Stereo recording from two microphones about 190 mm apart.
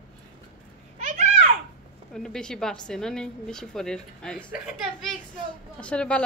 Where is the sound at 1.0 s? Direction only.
40° right (ahead or behind).